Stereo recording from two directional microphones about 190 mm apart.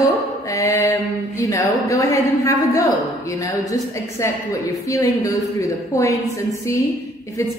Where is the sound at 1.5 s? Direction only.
15° left (ahead or behind).